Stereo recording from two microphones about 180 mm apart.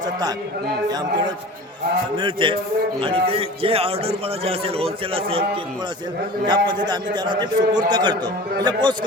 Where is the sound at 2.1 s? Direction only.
30° right (ahead or behind).